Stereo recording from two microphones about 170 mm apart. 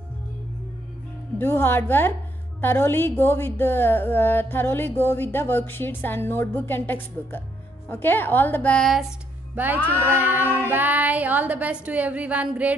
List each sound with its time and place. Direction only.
1.4 s a woman's voice: 15° left (ahead or behind)
9.8 s speech: 10° right (ahead or behind)